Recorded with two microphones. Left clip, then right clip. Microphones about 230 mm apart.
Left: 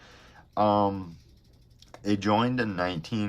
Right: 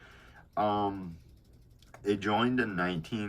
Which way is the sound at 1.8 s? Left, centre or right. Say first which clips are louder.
Left 2 dB; left.